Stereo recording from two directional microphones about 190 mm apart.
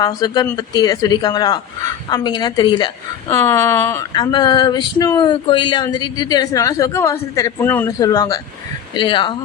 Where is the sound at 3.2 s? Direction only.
15° left (ahead or behind).